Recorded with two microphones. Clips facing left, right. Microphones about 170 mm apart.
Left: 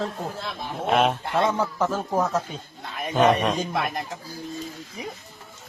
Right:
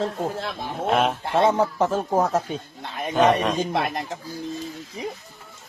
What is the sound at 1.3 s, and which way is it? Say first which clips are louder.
Speech: right 6 dB; 25° right (ahead or behind).